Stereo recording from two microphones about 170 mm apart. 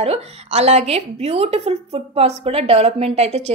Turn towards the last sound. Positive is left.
turn(degrees=-40)  # may be behind; listen again after turning